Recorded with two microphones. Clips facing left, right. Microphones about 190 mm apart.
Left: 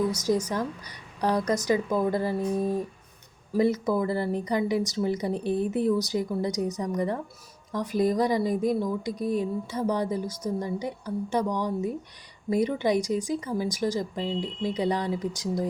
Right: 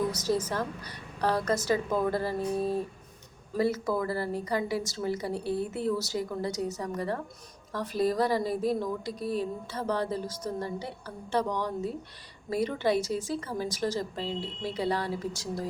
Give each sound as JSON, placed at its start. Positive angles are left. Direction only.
{"t": 0.1, "sound": "a woman's voice", "side_deg": 15}